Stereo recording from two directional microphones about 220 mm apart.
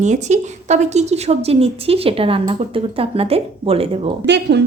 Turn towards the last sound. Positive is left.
turn(degrees=-50)  # may be behind; listen again after turning